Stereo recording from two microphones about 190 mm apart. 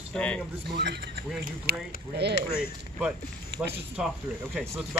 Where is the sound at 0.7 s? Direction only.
65° right (ahead or behind).